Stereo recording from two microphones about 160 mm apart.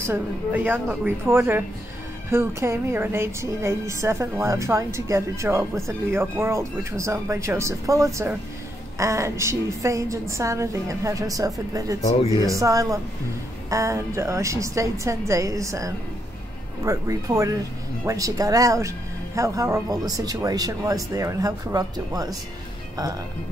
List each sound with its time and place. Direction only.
0.0 s a woman's voice: 10° right (ahead or behind)